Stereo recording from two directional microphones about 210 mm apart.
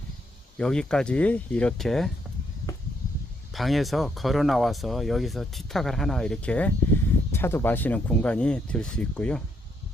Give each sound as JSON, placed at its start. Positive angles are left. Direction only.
{"t": 0.6, "sound": "speech", "side_deg": 5}
{"t": 3.5, "sound": "speech", "side_deg": 0}